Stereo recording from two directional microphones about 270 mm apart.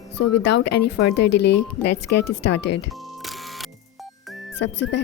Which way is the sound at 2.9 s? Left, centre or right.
Centre.